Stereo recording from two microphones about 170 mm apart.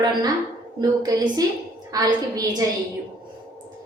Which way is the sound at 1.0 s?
25° right (ahead or behind).